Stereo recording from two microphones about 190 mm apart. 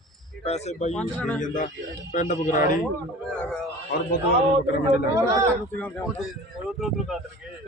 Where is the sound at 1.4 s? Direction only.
40° left (ahead or behind).